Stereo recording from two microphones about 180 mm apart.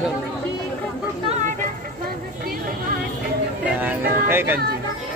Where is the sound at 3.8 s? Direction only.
10° right (ahead or behind).